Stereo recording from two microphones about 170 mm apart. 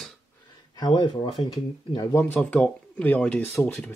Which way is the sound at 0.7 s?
25° left (ahead or behind).